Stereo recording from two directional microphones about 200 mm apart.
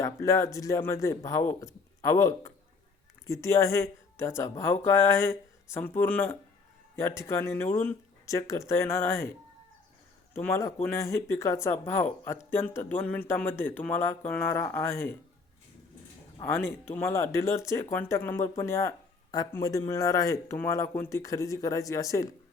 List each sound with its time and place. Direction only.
0.0 s speech: 15° left (ahead or behind)
10.3 s speech: 10° left (ahead or behind)
16.4 s speech: 10° left (ahead or behind)